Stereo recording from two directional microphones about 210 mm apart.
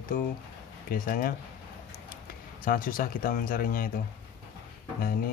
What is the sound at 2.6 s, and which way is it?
Speech, 40° left (ahead or behind).